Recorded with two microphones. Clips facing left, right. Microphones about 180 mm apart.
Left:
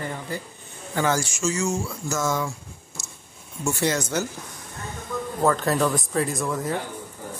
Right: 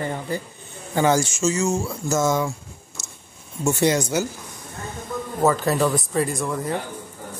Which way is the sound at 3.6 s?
15° right (ahead or behind).